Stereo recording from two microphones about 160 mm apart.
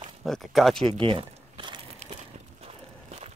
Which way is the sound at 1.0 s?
30° right (ahead or behind).